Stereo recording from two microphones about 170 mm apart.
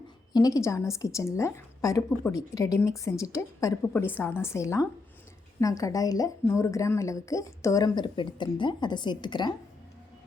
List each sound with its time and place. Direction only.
0.3 s a woman's voice: 20° left (ahead or behind)